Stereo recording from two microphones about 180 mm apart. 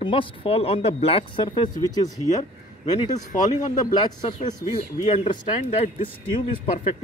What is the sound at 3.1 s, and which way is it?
Speech, 20° left (ahead or behind).